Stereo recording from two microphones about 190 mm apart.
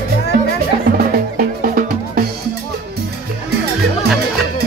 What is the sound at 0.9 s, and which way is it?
Music, 50° right (ahead or behind).